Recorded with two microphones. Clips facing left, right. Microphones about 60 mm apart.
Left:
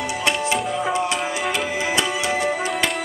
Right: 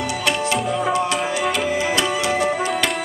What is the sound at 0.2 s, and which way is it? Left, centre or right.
Tabla, centre.